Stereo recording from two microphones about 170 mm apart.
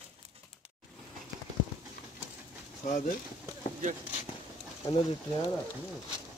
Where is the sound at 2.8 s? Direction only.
50° left (ahead or behind).